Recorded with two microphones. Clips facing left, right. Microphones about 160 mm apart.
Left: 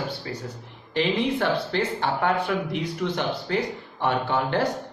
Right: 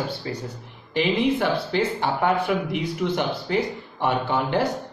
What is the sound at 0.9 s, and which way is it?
Speech, 10° right (ahead or behind).